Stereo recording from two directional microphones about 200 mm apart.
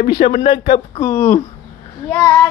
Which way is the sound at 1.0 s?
10° left (ahead or behind).